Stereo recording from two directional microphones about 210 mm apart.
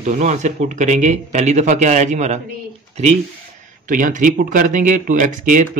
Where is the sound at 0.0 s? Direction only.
35° right (ahead or behind).